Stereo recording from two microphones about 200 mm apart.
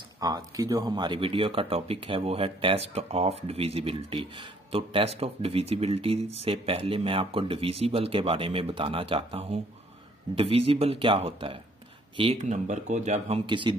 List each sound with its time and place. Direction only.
0.2 s speech: 20° right (ahead or behind)